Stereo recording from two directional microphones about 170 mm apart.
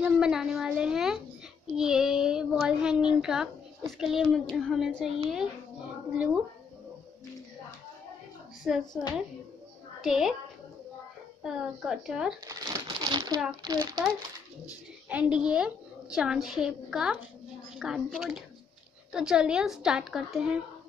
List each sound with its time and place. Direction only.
0.0 s a child's voice: 5° right (ahead or behind)
8.6 s a child's voice: centre (ahead or behind)
10.0 s a child's voice: centre (ahead or behind)
11.4 s a child's voice: 5° right (ahead or behind)
12.4 s crumpling: 20° right (ahead or behind)
13.6 s a child's voice: 25° right (ahead or behind)
15.0 s a child's voice: 5° right (ahead or behind)